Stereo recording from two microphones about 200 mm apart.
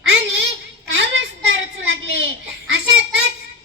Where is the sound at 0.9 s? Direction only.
60° right (ahead or behind).